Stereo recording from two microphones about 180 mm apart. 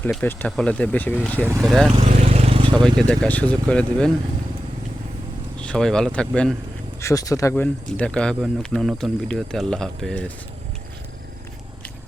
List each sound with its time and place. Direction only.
0.0 s speech: 10° left (ahead or behind)
1.9 s speech: 35° right (ahead or behind)
3.1 s speech: 5° left (ahead or behind)
5.5 s speech: 5° left (ahead or behind)
7.0 s speech: 20° left (ahead or behind)